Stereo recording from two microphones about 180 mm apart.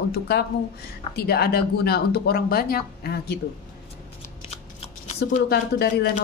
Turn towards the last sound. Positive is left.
turn(degrees=60)  # may be behind; listen again after turning